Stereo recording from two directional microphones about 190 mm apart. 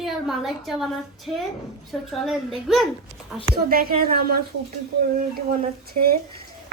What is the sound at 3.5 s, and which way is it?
Speech, 50° right (ahead or behind).